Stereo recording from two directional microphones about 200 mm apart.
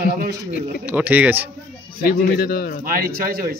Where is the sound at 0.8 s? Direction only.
10° right (ahead or behind).